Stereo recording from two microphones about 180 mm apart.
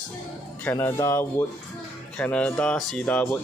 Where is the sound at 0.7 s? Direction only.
15° left (ahead or behind).